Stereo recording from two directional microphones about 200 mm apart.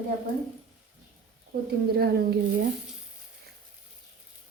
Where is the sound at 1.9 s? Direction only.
50° right (ahead or behind).